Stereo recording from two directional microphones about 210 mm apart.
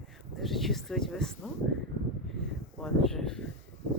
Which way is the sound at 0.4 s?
Centre (ahead or behind).